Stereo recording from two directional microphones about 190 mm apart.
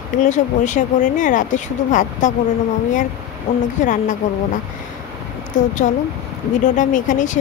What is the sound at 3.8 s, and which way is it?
Speech, 40° left (ahead or behind).